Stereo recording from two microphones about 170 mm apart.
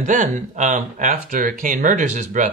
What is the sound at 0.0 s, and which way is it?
Speech, 50° right (ahead or behind).